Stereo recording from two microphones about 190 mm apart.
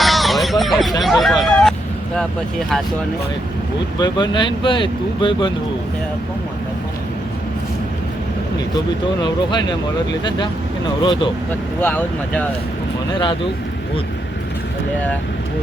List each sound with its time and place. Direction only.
0.0 s a sound: centre (ahead or behind)
1.0 s hubbub: centre (ahead or behind)
2.1 s speech: centre (ahead or behind)
4.0 s speech: 25° left (ahead or behind)
9.2 s speech: 20° left (ahead or behind)
11.8 s speech: 10° left (ahead or behind)